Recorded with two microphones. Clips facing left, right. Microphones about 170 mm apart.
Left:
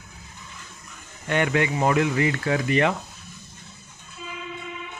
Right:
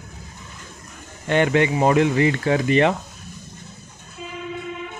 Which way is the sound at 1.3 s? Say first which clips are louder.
Right 5 dB; 30° right (ahead or behind).